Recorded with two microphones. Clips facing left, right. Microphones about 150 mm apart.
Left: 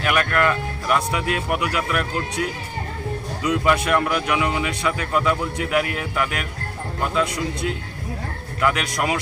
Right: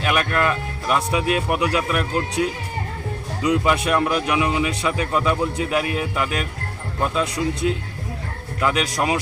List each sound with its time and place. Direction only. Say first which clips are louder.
0.0 s speech: even; 20° right (ahead or behind)